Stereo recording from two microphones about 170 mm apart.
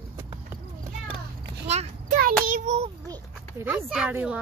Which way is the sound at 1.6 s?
40° right (ahead or behind).